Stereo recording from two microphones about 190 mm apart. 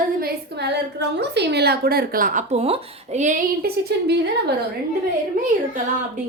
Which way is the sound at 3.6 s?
60° right (ahead or behind).